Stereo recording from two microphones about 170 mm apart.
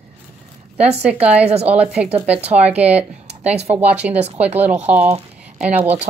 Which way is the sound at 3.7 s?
10° right (ahead or behind).